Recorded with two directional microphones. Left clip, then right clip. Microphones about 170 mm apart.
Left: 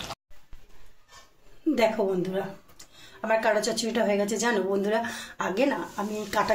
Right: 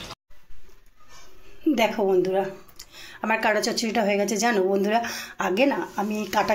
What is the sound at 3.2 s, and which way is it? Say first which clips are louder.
A woman's voice: right 1 dB; 40° right (ahead or behind).